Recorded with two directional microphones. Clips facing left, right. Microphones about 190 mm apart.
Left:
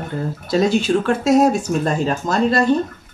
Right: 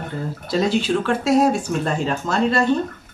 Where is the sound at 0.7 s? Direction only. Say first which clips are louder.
Left 3 dB; 45° left (ahead or behind).